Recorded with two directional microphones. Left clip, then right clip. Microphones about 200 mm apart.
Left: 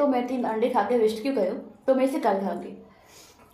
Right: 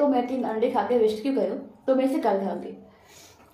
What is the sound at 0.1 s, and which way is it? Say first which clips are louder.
A woman's voice: right 1 dB; 10° left (ahead or behind).